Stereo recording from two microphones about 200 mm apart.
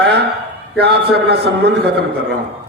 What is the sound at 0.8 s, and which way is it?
A man's voice, 55° right (ahead or behind).